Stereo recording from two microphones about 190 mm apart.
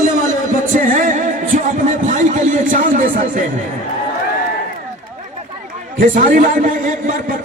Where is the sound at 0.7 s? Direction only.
45° right (ahead or behind).